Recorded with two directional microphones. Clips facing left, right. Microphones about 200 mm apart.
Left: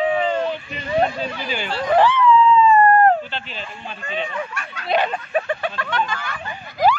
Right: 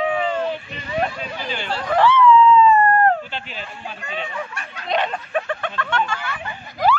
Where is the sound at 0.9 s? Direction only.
30° left (ahead or behind).